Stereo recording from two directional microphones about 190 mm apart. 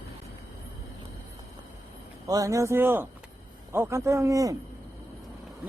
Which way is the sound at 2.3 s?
20° right (ahead or behind).